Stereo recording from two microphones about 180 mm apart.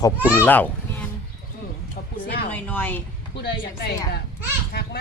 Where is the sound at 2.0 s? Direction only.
50° left (ahead or behind).